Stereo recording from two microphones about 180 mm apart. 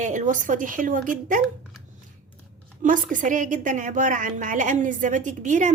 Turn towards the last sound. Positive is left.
turn(degrees=-45)  # may be behind; listen again after turning